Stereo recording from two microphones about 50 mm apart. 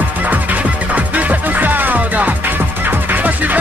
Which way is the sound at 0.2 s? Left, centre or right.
Right.